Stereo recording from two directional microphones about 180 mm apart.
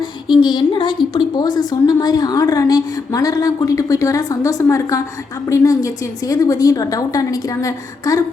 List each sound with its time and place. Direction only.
0.4 s a woman's voice: 25° left (ahead or behind)